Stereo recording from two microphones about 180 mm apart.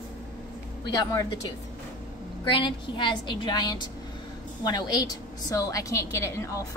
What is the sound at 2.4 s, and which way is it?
A woman's voice, 25° left (ahead or behind).